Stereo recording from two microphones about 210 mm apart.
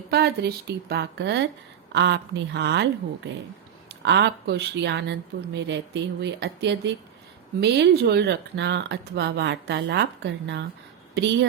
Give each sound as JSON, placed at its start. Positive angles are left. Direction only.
{"t": 0.1, "sound": "speech", "side_deg": -50}
{"t": 4.0, "sound": "speech", "side_deg": -55}